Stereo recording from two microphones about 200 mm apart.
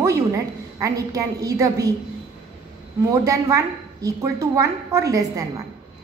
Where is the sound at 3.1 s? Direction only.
15° right (ahead or behind).